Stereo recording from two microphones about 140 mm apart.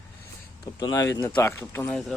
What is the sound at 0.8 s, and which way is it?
Speech, 25° left (ahead or behind).